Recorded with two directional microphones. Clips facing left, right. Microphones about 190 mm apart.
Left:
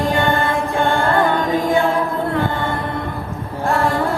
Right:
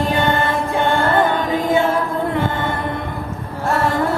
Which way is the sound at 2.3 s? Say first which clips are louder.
Even; 20° right (ahead or behind).